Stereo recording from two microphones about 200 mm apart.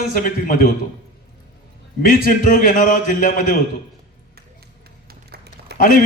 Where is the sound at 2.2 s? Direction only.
45° left (ahead or behind).